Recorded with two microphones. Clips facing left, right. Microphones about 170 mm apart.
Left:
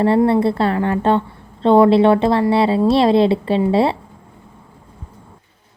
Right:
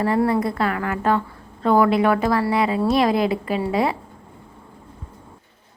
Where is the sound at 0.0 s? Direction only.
30° left (ahead or behind).